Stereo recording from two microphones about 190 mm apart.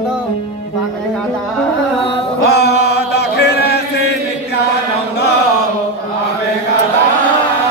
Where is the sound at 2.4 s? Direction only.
60° left (ahead or behind).